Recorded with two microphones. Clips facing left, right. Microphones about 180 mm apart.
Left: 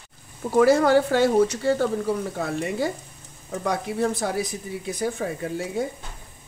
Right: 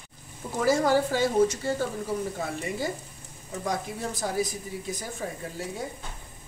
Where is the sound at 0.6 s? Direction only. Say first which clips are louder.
Left 6 dB; 65° left (ahead or behind).